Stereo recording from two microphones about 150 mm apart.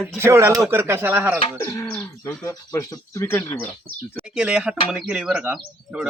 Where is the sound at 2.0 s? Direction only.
20° left (ahead or behind).